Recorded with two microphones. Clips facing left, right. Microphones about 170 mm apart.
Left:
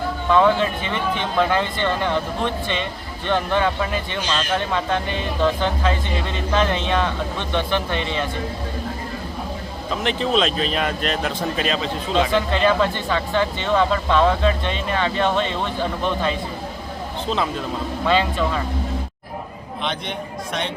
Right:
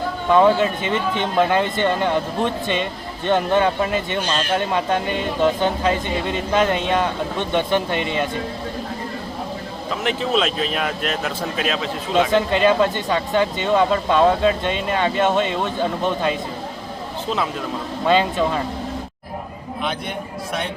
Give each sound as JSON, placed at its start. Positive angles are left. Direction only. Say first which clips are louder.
{"t": 0.3, "sound": "speech", "louder": "right 2 dB", "side_deg": -15}
{"t": 4.2, "sound": "a man's voice", "louder": "right 1 dB", "side_deg": -45}
{"t": 4.5, "sound": "speech", "louder": "right 2 dB", "side_deg": -15}
{"t": 10.0, "sound": "speech", "louder": "even", "side_deg": -5}
{"t": 12.3, "sound": "speech", "louder": "right 2 dB", "side_deg": -20}
{"t": 18.0, "sound": "speech", "louder": "right 2 dB", "side_deg": -20}
{"t": 19.8, "sound": "speech", "louder": "right 1 dB", "side_deg": -5}